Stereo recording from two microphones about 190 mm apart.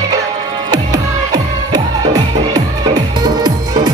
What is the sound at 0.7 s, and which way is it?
Music, 20° right (ahead or behind).